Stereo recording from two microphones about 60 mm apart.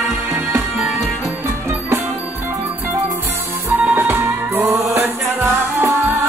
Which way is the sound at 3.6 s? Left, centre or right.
Right.